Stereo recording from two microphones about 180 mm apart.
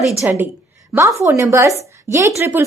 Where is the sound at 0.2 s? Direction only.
10° right (ahead or behind).